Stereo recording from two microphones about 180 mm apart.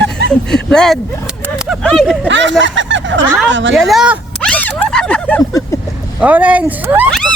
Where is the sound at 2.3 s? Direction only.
90° right.